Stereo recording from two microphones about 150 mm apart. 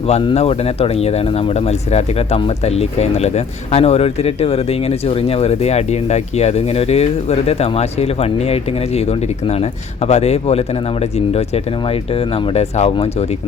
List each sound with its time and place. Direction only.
0.1 s speech: 40° left (ahead or behind)
10.1 s speech: 45° left (ahead or behind)
12.5 s speech: 45° left (ahead or behind)